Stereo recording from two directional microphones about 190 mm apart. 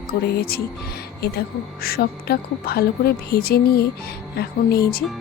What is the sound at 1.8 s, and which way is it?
Speech, 50° left (ahead or behind).